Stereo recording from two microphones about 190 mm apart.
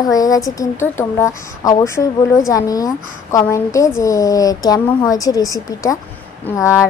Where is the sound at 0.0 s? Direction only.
20° left (ahead or behind).